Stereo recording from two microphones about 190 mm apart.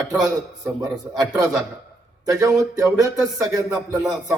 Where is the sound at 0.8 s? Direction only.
15° right (ahead or behind).